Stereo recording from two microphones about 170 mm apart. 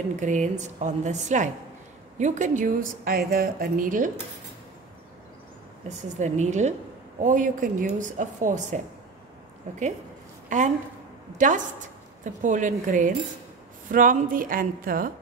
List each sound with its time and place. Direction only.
0.2 s a woman's voice: 45° right (ahead or behind)
5.9 s a woman's voice: 45° right (ahead or behind)
10.5 s a woman's voice: 45° right (ahead or behind)